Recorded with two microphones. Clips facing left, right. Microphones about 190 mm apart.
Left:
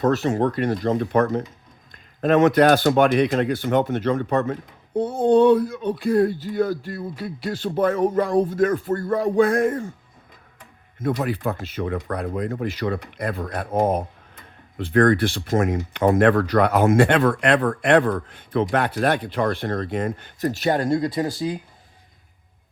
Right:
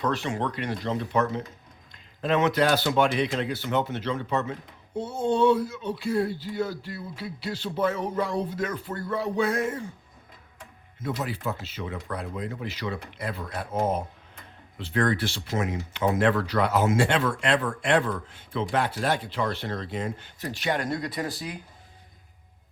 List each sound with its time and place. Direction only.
0.0 s speech: 40° left (ahead or behind)
11.0 s speech: 55° left (ahead or behind); by 20.8 s 40° left (ahead or behind)
20.8 s speech: 25° left (ahead or behind)